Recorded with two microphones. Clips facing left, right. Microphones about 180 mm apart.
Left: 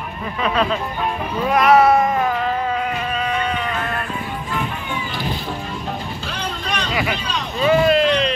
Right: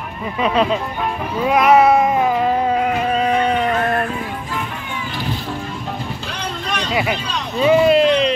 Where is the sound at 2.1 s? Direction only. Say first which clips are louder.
Right 3 dB; 15° right (ahead or behind).